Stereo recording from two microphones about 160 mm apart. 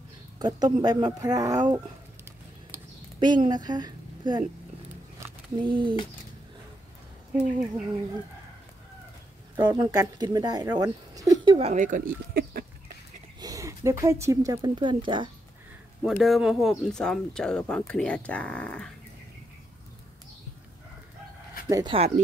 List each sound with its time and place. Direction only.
0.4 s speech: 25° right (ahead or behind)
3.2 s a woman's voice: 30° right (ahead or behind)
5.6 s speech: 30° right (ahead or behind)
9.6 s speech: 25° right (ahead or behind)
11.5 s speech: 45° right (ahead or behind); by 12.9 s 70° right (ahead or behind)
13.4 s speech: 20° right (ahead or behind)
16.0 s speech: 5° right (ahead or behind)
21.6 s speech: 20° right (ahead or behind)
21.9 s speech: 40° right (ahead or behind)